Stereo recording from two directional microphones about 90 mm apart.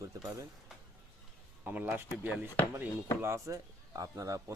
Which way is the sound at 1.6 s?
20° right (ahead or behind).